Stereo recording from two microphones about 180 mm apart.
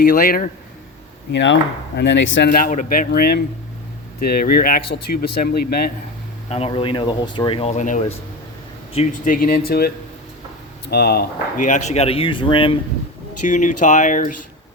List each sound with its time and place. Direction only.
0.0 s speech: 60° left (ahead or behind)
1.3 s speech: 90° left; by 5.9 s 60° left (ahead or behind)
6.5 s speech: 30° left (ahead or behind)
9.2 s speech: 50° left (ahead or behind); by 12.8 s 30° left (ahead or behind)
13.5 s speech: 45° left (ahead or behind)